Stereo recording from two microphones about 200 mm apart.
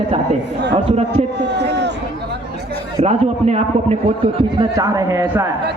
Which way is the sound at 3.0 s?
30° right (ahead or behind).